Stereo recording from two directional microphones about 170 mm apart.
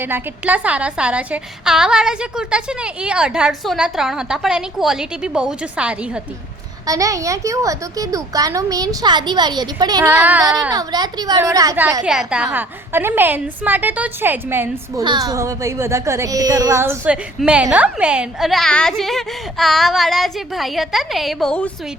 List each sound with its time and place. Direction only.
0.0 s speech: 10° right (ahead or behind)
6.8 s a woman's voice: 20° right (ahead or behind)
10.1 s a woman's voice: 10° right (ahead or behind)
10.7 s a woman's voice: 25° right (ahead or behind)
12.0 s a woman's voice: 5° right (ahead or behind)
15.0 s speech: 25° right (ahead or behind); by 21.7 s 5° left (ahead or behind)